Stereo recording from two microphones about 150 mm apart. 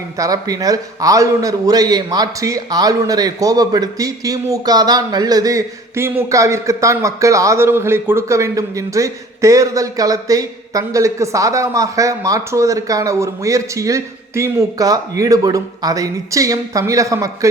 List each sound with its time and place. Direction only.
0.2 s a man's voice: 25° right (ahead or behind)